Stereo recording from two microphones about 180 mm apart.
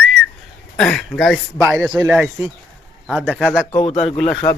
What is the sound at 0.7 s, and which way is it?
A man's voice, centre (ahead or behind).